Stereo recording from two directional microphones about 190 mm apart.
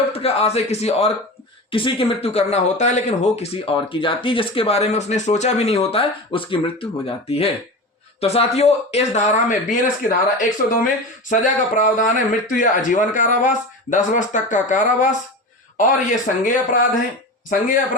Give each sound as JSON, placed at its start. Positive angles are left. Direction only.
{"t": 0.1, "sound": "speech", "side_deg": 30}